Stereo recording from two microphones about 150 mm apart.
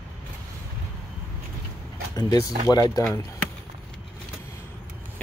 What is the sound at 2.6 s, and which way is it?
Speech, 25° left (ahead or behind).